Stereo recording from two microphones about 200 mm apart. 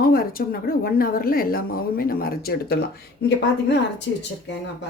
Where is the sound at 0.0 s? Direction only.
45° left (ahead or behind).